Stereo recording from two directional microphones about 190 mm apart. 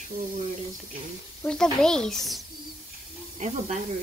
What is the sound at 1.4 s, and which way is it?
Speech, 5° left (ahead or behind).